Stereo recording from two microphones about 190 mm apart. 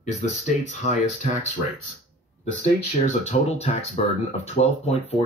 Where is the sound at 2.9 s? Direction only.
40° left (ahead or behind).